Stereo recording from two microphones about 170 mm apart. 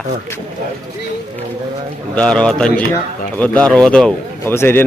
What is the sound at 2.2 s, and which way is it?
A man's voice, 5° left (ahead or behind).